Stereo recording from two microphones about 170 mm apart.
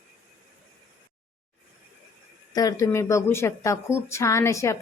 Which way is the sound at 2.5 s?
20° left (ahead or behind).